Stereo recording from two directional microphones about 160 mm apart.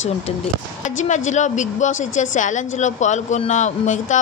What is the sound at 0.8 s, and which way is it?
A woman's voice, 50° left (ahead or behind).